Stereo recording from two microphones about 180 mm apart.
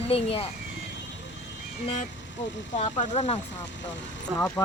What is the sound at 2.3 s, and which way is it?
Speech, 90° left.